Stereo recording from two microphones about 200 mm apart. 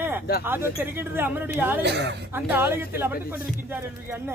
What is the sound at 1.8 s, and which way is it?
Speech, 55° right (ahead or behind).